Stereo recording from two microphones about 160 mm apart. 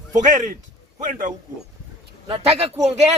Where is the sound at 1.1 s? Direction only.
55° right (ahead or behind).